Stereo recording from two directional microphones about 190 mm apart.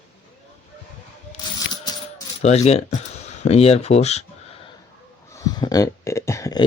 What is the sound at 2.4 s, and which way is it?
Speech, 35° left (ahead or behind).